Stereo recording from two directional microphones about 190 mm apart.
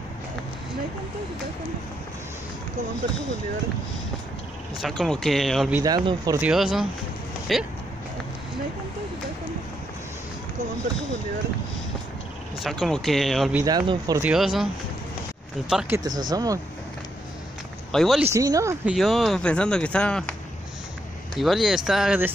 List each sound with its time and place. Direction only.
4.8 s speech: centre (ahead or behind)
5.8 s speech: 20° right (ahead or behind)
6.4 s speech: 5° right (ahead or behind)
12.5 s speech: centre (ahead or behind)
13.6 s speech: 20° right (ahead or behind)
14.2 s speech: 5° right (ahead or behind)
15.7 s speech: 5° right (ahead or behind)
16.0 s speech: 20° right (ahead or behind)
17.9 s speech: centre (ahead or behind)
18.2 s speech: 15° right (ahead or behind)
18.9 s speech: centre (ahead or behind)
21.4 s speech: centre (ahead or behind)